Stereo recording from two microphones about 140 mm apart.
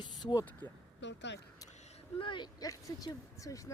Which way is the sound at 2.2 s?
35° left (ahead or behind).